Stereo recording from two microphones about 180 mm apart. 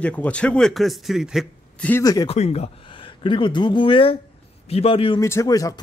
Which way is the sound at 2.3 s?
35° left (ahead or behind).